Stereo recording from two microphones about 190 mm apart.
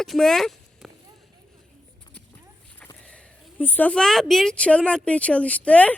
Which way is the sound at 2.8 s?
10° left (ahead or behind).